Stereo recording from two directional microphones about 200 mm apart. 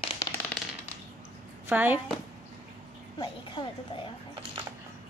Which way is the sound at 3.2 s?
25° left (ahead or behind).